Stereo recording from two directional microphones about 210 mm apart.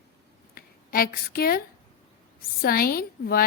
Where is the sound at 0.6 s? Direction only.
45° left (ahead or behind).